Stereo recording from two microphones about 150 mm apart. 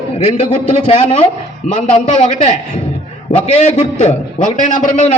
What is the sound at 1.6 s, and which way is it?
A man's voice, 50° left (ahead or behind).